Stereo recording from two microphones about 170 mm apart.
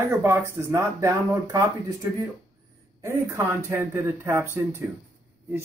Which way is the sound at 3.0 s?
15° right (ahead or behind).